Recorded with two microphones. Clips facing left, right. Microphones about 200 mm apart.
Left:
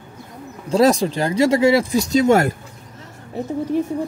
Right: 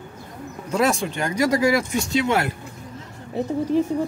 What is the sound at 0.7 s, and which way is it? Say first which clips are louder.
Speech: left 6 dB; 35° left (ahead or behind).